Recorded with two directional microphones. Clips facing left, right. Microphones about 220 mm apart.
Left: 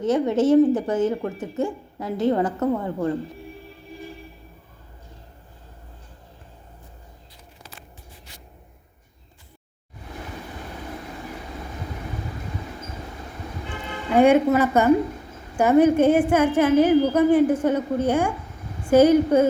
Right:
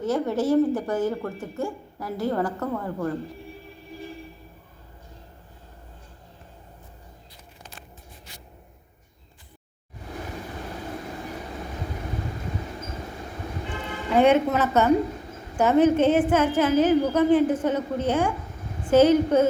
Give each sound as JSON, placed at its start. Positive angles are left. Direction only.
{"t": 0.0, "sound": "speech", "side_deg": 20}
{"t": 14.2, "sound": "speech", "side_deg": 10}